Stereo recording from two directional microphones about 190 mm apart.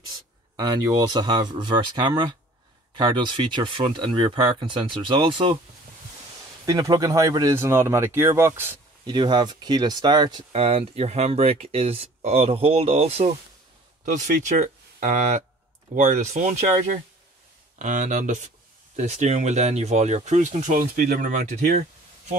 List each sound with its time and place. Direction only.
0.6 s speech: 20° right (ahead or behind)
6.6 s speech: 20° right (ahead or behind)
9.0 s speech: 25° right (ahead or behind)